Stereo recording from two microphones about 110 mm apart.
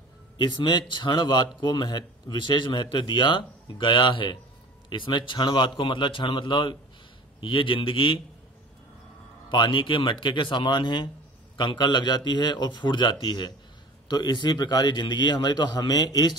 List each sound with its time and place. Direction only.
0.4 s speech: 45° left (ahead or behind)
9.5 s a man's voice: 45° left (ahead or behind)